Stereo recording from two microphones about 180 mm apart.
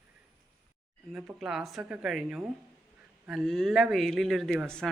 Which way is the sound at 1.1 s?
5° right (ahead or behind).